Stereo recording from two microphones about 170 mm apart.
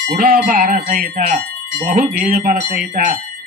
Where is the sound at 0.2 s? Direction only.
55° right (ahead or behind).